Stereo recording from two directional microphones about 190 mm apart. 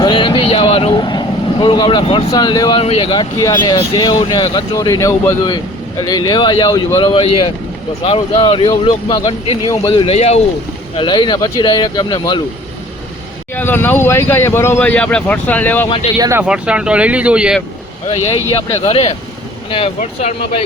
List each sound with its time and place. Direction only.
0.0 s speech: 25° left (ahead or behind)
11.1 s speech: 25° left (ahead or behind)
13.6 s speech: 10° left (ahead or behind)
16.1 s speech: 20° right (ahead or behind)
16.4 s speech: 5° right (ahead or behind)
18.5 s speech: 30° left (ahead or behind)